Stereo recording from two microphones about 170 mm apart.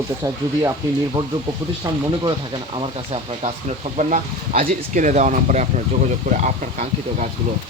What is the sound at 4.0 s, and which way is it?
Speech, 45° right (ahead or behind).